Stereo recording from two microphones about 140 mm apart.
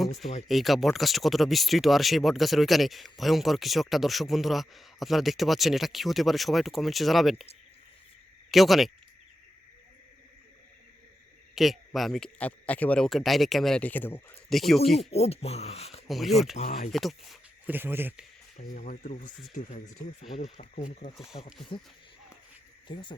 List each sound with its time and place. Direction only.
0.4 s speech: centre (ahead or behind)
8.4 s speech: centre (ahead or behind)
11.5 s speech: centre (ahead or behind)
14.5 s speech: centre (ahead or behind)
15.1 s speech: 45° left (ahead or behind)
16.0 s speech: centre (ahead or behind)
17.7 s speech: 15° right (ahead or behind)
18.5 s speech: 75° left (ahead or behind)
20.3 s speech: 50° left (ahead or behind)
21.2 s speech: 5° right (ahead or behind)
22.9 s speech: 35° left (ahead or behind)